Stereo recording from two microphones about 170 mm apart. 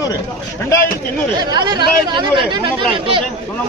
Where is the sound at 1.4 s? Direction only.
25° right (ahead or behind).